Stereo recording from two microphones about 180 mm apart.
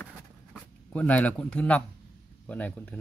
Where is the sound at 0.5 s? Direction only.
10° left (ahead or behind).